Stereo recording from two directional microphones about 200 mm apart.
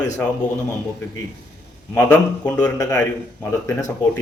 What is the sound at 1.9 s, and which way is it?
A man's voice, 10° left (ahead or behind).